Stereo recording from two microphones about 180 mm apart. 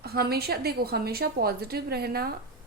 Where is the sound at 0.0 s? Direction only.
60° right (ahead or behind).